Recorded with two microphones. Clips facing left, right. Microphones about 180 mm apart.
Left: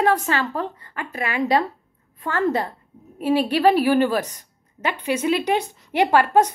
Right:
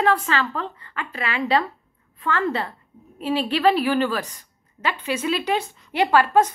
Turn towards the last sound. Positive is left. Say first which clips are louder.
# left 1 dB
turn(degrees=15)  # may be behind; listen again after turning